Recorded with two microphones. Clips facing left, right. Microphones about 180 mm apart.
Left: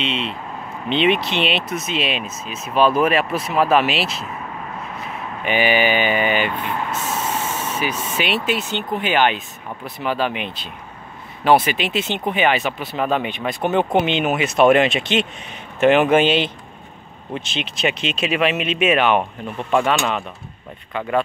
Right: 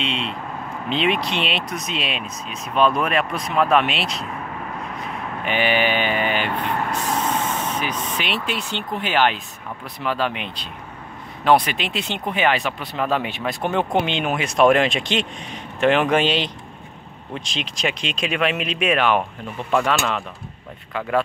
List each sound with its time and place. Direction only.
0.0 s speech: centre (ahead or behind)
5.4 s speech: 5° left (ahead or behind)
7.0 s spray: 25° left (ahead or behind)
7.2 s speech: 10° left (ahead or behind)